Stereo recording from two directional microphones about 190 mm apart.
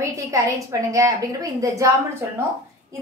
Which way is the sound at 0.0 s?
15° right (ahead or behind).